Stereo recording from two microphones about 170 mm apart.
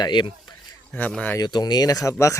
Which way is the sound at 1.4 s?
25° left (ahead or behind).